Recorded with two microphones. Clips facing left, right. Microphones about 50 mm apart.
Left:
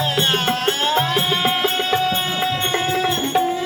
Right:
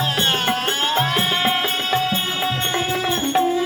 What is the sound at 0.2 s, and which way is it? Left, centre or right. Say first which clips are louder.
Music: left 1 dB; centre.